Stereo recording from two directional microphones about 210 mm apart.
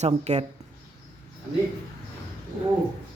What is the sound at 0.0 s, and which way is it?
Speech, 30° right (ahead or behind).